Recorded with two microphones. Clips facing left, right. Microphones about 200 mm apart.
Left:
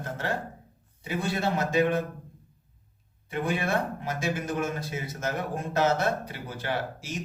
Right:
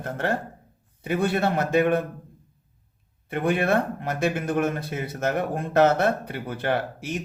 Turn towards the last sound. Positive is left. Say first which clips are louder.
# right 5 dB
turn(degrees=-55)  # may be behind; listen again after turning